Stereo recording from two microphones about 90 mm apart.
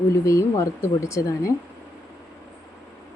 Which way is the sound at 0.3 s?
35° left (ahead or behind).